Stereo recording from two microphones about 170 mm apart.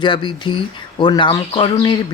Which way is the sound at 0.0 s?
25° left (ahead or behind).